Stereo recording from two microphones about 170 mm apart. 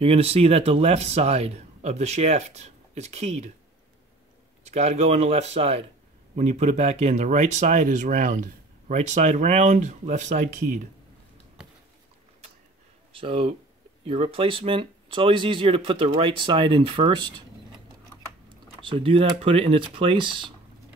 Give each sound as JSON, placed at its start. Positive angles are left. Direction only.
{"t": 0.0, "sound": "speech", "side_deg": -35}
{"t": 4.6, "sound": "speech", "side_deg": -40}
{"t": 13.1, "sound": "speech", "side_deg": -30}
{"t": 18.5, "sound": "speech", "side_deg": -30}